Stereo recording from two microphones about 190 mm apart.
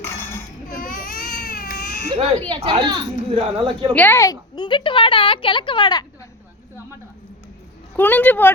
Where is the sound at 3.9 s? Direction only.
10° left (ahead or behind).